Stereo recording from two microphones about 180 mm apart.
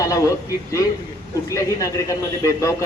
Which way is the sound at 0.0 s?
20° left (ahead or behind).